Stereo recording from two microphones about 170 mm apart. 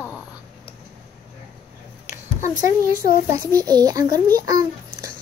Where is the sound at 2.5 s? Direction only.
55° left (ahead or behind).